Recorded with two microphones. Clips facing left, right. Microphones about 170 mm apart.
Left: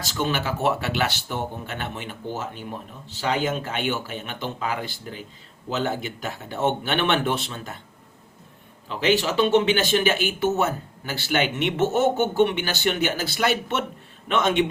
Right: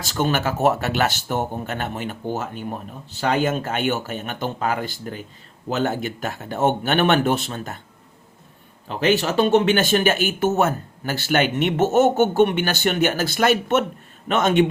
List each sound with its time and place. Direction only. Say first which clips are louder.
0.0 s speech: right 4 dB; 50° right (ahead or behind)
8.9 s speech: right 2 dB; 50° right (ahead or behind)